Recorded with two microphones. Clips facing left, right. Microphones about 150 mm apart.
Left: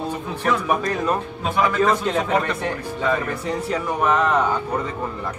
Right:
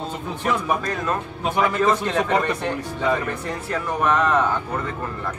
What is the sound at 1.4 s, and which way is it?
Speech, 15° right (ahead or behind).